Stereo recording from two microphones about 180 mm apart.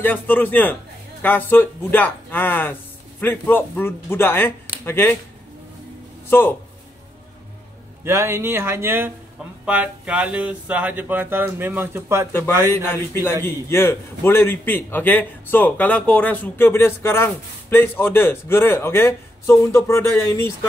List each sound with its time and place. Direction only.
0.0 s a man's voice: 10° left (ahead or behind)
6.3 s a man's voice: 10° left (ahead or behind)
8.0 s speech: 15° right (ahead or behind)
12.3 s a man's voice: 10° left (ahead or behind)